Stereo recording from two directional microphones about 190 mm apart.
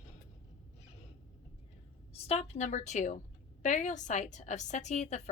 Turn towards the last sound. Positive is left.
turn(degrees=40)  # may be behind; listen again after turning